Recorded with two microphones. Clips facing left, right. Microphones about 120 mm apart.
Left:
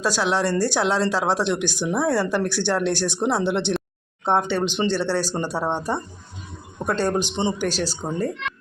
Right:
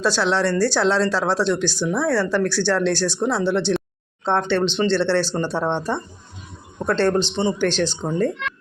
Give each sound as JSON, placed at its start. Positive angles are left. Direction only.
{"t": 0.0, "sound": "speech", "side_deg": 10}